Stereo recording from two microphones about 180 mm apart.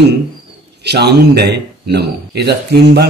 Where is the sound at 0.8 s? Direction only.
65° right (ahead or behind).